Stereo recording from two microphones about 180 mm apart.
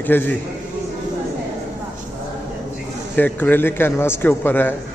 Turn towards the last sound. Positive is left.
turn(degrees=10)  # may be behind; listen again after turning